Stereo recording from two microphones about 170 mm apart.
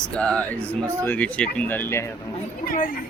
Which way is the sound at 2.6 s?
55° left (ahead or behind).